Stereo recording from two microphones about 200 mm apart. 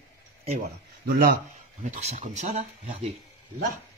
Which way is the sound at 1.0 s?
50° right (ahead or behind).